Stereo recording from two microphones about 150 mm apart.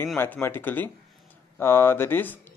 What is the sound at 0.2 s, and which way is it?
Speech, 15° left (ahead or behind).